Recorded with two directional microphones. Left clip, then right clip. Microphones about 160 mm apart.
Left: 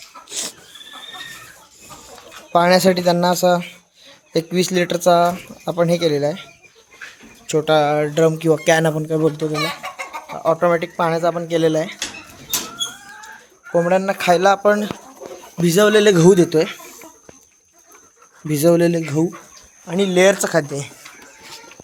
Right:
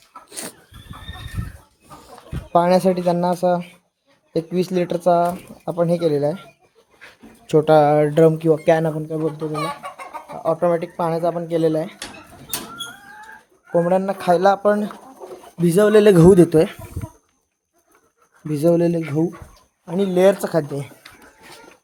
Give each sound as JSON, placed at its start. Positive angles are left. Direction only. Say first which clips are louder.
{"t": 0.3, "sound": "dog", "louder": "left 7 dB", "side_deg": -35}
{"t": 2.5, "sound": "speech", "louder": "left 2 dB", "side_deg": -5}
{"t": 7.4, "sound": "speech", "louder": "right 2 dB", "side_deg": -35}
{"t": 8.6, "sound": "speech", "louder": "left 3 dB", "side_deg": 5}
{"t": 9.0, "sound": "speech", "louder": "left 5 dB", "side_deg": 25}
{"t": 10.4, "sound": "speech", "louder": "left 3 dB", "side_deg": 0}
{"t": 13.7, "sound": "speech", "louder": "left 2 dB", "side_deg": -10}
{"t": 16.0, "sound": "speech", "louder": "right 1 dB", "side_deg": -35}
{"t": 18.4, "sound": "speech", "louder": "left 2 dB", "side_deg": 0}